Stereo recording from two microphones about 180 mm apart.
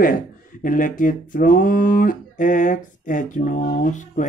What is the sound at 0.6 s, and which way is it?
A man's voice, 50° left (ahead or behind).